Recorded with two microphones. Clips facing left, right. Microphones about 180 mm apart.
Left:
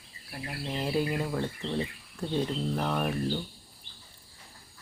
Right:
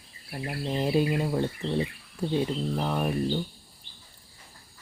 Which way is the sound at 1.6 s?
10° right (ahead or behind).